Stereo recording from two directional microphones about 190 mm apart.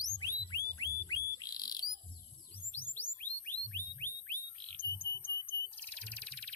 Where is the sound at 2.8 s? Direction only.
10° left (ahead or behind).